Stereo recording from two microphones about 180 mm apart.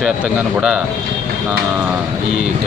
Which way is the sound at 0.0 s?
5° right (ahead or behind).